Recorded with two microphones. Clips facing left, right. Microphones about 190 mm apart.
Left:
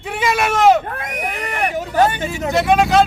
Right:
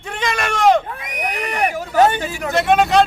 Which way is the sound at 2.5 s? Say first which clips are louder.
Even; centre (ahead or behind).